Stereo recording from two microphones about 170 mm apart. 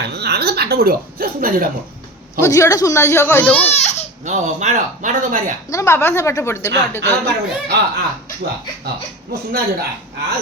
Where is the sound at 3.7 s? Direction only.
40° left (ahead or behind).